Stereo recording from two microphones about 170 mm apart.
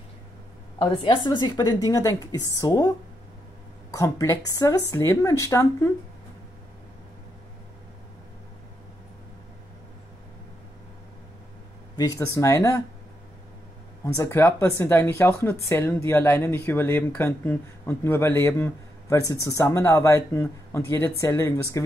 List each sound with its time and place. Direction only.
0.9 s a woman's voice: 25° left (ahead or behind)
3.9 s speech: 15° left (ahead or behind)
12.0 s speech: 20° left (ahead or behind)
14.0 s speech: 15° left (ahead or behind)